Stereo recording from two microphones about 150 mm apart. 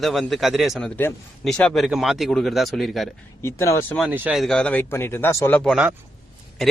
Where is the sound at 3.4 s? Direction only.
20° left (ahead or behind).